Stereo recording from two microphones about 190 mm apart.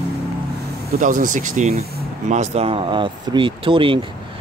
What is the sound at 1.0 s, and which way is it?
Speech, 45° right (ahead or behind).